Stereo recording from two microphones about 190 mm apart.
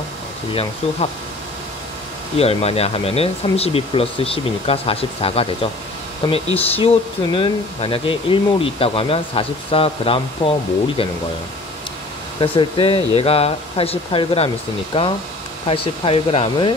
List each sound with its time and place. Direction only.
2.3 s speech: 30° left (ahead or behind)
12.4 s speech: 25° left (ahead or behind)